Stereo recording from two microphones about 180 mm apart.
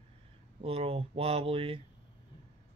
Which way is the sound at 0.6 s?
30° right (ahead or behind).